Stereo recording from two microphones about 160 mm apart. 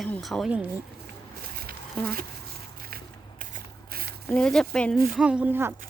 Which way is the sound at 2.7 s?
65° right (ahead or behind).